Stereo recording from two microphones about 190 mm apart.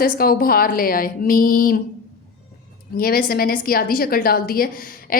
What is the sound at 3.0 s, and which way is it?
A woman's voice, 50° left (ahead or behind).